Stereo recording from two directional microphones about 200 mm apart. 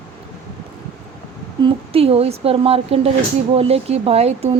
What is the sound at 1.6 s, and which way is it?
Speech, 25° right (ahead or behind).